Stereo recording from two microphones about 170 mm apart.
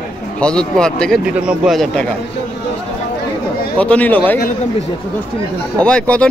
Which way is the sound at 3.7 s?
10° left (ahead or behind).